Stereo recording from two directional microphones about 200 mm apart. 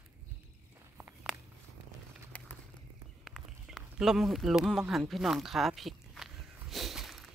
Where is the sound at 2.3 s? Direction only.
5° left (ahead or behind).